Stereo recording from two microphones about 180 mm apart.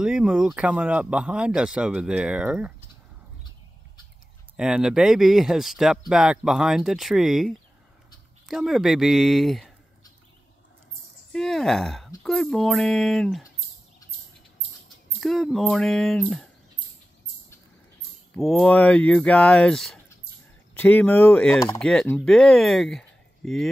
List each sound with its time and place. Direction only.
0.0 s speech: 5° right (ahead or behind)
4.6 s speech: 5° right (ahead or behind)
11.3 s speech: centre (ahead or behind)
15.1 s speech: centre (ahead or behind)
18.3 s speech: 5° left (ahead or behind)